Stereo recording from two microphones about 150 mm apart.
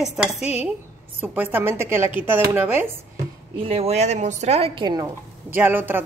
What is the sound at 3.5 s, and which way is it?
A woman's voice, 40° right (ahead or behind).